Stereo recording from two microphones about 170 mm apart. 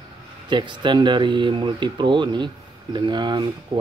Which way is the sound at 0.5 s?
25° right (ahead or behind).